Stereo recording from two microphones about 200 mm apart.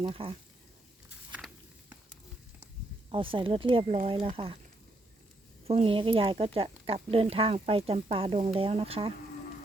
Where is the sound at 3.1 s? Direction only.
25° right (ahead or behind).